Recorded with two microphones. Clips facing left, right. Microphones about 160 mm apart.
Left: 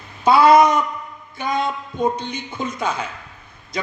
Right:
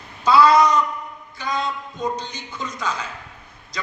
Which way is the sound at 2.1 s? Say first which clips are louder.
Left 4 dB; 55° left (ahead or behind).